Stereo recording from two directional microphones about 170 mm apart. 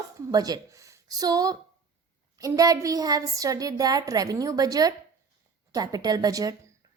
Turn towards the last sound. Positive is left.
turn(degrees=-20)  # may be behind; listen again after turning